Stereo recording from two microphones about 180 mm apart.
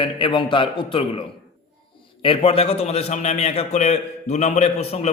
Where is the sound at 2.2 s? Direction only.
30° left (ahead or behind).